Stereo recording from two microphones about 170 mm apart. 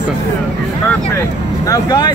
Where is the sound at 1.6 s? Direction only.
20° left (ahead or behind).